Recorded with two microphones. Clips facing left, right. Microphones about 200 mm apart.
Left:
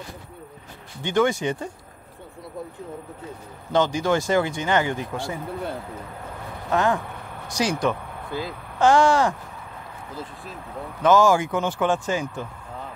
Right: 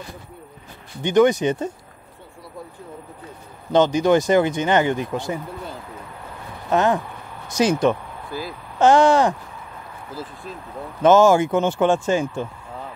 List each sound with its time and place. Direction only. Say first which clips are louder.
1.0 s speech: right 5 dB; 20° right (ahead or behind)
3.7 s speech: right 5 dB; 20° right (ahead or behind)
6.7 s speech: right 3 dB; 20° right (ahead or behind)
8.3 s speech: even; 20° left (ahead or behind)
8.7 s speech: right 3 dB; 20° right (ahead or behind)
11.0 s speech: right 4 dB; 25° right (ahead or behind)